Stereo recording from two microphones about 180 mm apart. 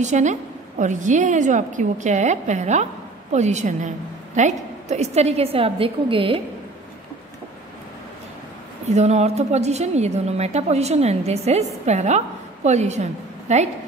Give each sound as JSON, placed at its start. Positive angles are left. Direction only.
{"t": 0.0, "sound": "a woman's voice", "side_deg": -40}
{"t": 8.8, "sound": "a woman's voice", "side_deg": -40}